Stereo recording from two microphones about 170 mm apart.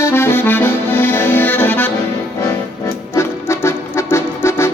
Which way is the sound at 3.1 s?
15° left (ahead or behind).